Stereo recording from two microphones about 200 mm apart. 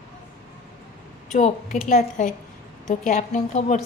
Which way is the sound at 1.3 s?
35° left (ahead or behind).